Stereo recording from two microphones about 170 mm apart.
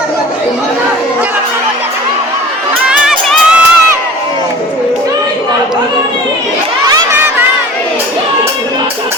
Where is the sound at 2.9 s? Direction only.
5° right (ahead or behind).